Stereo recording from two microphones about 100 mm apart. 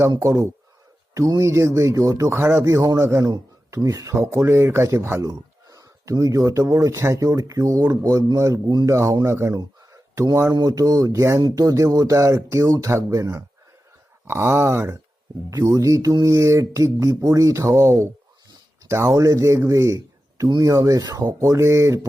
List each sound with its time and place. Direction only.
0.2 s speech: 30° right (ahead or behind)
2.3 s speech: 25° right (ahead or behind)
9.6 s a sound: 40° right (ahead or behind)
10.5 s speech: 40° right (ahead or behind); by 14.9 s 25° right (ahead or behind)
15.4 s speech: 35° right (ahead or behind)